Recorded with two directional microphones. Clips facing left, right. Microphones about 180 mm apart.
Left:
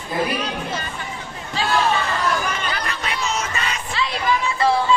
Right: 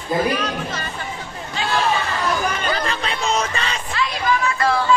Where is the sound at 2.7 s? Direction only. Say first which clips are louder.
Right 4 dB; 30° right (ahead or behind).